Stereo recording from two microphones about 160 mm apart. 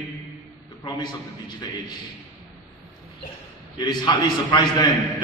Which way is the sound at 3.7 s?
25° left (ahead or behind).